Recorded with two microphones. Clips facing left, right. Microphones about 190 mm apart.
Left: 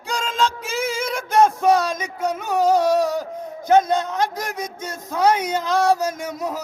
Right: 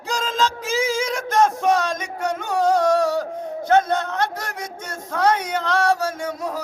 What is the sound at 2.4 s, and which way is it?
Music, 5° left (ahead or behind).